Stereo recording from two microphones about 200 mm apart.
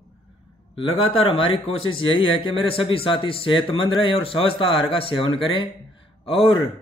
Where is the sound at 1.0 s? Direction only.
25° left (ahead or behind).